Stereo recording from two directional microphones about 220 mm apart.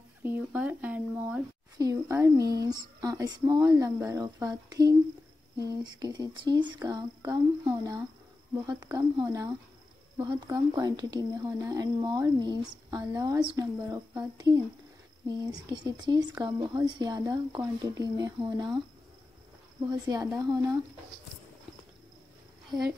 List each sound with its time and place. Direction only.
0.2 s a sound: 10° right (ahead or behind)
2.6 s speech: 15° right (ahead or behind)
6.4 s speech: 20° right (ahead or behind)
19.9 s speech: 15° right (ahead or behind)